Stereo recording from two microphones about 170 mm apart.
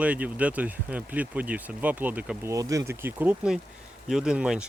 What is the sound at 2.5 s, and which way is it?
Cattle, 20° right (ahead or behind).